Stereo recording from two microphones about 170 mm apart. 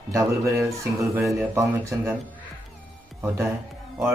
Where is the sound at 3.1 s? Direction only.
15° right (ahead or behind).